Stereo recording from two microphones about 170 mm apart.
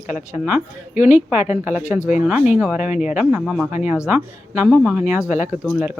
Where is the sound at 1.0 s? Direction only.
10° right (ahead or behind).